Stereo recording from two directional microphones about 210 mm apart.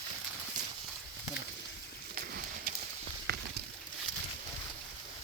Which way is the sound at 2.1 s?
45° right (ahead or behind).